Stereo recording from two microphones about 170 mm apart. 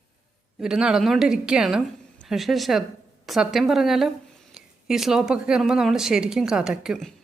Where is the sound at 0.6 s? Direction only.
5° right (ahead or behind).